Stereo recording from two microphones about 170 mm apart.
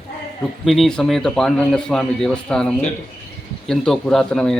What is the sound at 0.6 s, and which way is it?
A man's voice, centre (ahead or behind).